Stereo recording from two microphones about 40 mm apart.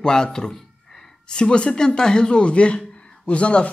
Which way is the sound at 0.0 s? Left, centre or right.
Centre.